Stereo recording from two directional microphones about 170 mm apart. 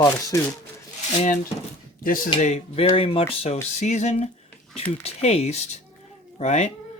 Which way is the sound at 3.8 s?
45° left (ahead or behind).